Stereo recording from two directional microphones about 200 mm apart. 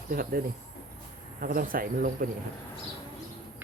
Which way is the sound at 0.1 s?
50° right (ahead or behind).